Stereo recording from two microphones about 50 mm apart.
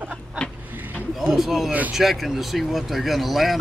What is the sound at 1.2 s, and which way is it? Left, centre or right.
Speech, centre.